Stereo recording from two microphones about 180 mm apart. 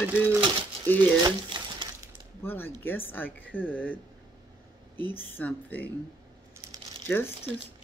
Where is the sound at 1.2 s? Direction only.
25° right (ahead or behind).